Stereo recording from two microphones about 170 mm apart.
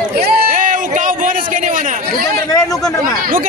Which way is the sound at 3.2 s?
55° right (ahead or behind).